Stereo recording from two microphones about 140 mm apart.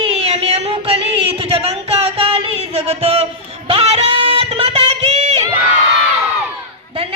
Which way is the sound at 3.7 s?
45° right (ahead or behind).